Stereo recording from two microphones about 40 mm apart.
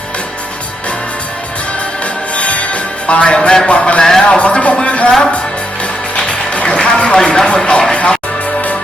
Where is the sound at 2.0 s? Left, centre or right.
Left.